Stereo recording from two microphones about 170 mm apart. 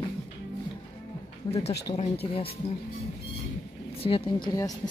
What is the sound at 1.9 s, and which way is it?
Speech, 35° left (ahead or behind).